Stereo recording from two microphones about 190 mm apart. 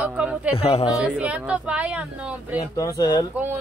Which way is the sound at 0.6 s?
30° left (ahead or behind).